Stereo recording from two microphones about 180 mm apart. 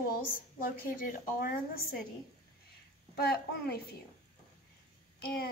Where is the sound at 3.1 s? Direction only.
60° left (ahead or behind).